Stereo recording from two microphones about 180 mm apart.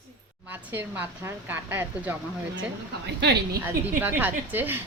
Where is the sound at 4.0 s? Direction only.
10° right (ahead or behind).